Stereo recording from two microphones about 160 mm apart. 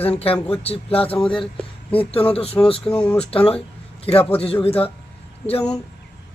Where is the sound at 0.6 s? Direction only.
35° left (ahead or behind).